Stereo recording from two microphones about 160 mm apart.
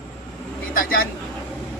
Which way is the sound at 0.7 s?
60° left (ahead or behind).